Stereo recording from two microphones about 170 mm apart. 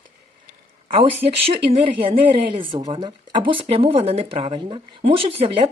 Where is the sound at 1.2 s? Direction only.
35° right (ahead or behind).